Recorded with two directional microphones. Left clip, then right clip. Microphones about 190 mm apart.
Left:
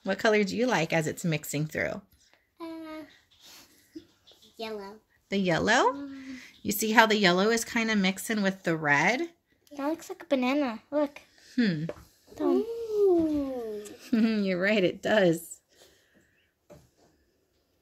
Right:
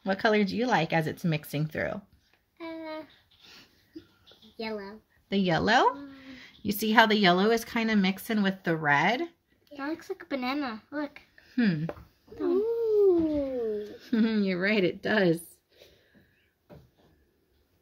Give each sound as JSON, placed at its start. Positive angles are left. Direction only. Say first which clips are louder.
{"t": 0.0, "sound": "a woman's voice", "louder": "left 1 dB", "side_deg": 5}
{"t": 2.5, "sound": "a sound", "louder": "right 2 dB", "side_deg": 10}
{"t": 4.6, "sound": "speech", "louder": "right 1 dB", "side_deg": 25}
{"t": 5.3, "sound": "a woman's voice", "louder": "right 1 dB", "side_deg": 5}
{"t": 9.8, "sound": "a child's voice", "louder": "left 2 dB", "side_deg": 35}
{"t": 11.4, "sound": "speech", "louder": "even", "side_deg": 5}
{"t": 12.4, "sound": "a child's voice", "louder": "left 1 dB", "side_deg": 40}
{"t": 13.6, "sound": "a sound", "louder": "right 5 dB", "side_deg": 15}